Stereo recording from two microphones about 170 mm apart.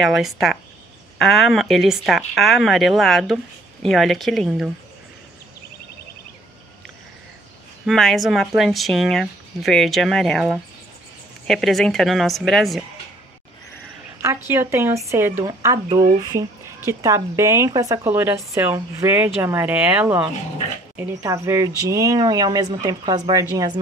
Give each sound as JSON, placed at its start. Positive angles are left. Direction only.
{"t": 0.0, "sound": "speech", "side_deg": 0}
{"t": 7.8, "sound": "speech", "side_deg": 0}
{"t": 14.5, "sound": "speech", "side_deg": -15}